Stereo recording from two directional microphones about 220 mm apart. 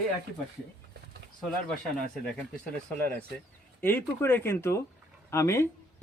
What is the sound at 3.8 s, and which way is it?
A man's voice, 10° left (ahead or behind).